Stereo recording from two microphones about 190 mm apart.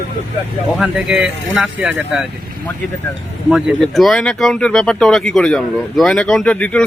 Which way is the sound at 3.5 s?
5° right (ahead or behind).